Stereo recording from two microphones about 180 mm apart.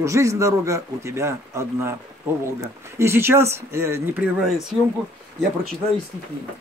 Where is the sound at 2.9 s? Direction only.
15° right (ahead or behind).